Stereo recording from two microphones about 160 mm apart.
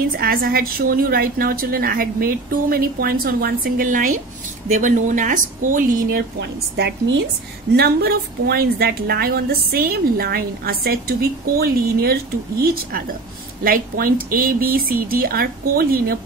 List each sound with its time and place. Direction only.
0.2 s a woman's voice: 65° right (ahead or behind)
7.7 s a woman's voice: 75° right (ahead or behind)